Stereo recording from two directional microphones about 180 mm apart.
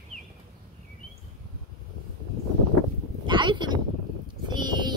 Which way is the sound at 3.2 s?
25° right (ahead or behind).